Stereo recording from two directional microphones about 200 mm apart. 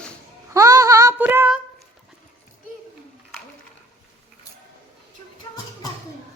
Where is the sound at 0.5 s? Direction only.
15° right (ahead or behind).